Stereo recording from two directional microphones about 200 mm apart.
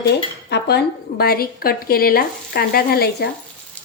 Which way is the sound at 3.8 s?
5° left (ahead or behind).